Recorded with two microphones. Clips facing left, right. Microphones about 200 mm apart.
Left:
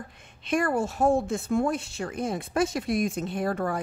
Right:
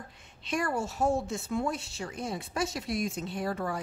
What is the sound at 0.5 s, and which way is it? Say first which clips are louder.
Speech: left 6 dB; 55° left (ahead or behind).